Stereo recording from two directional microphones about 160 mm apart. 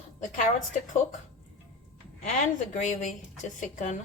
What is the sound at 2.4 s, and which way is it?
A woman's voice, 50° left (ahead or behind).